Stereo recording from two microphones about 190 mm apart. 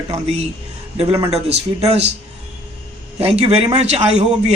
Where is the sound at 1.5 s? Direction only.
35° right (ahead or behind).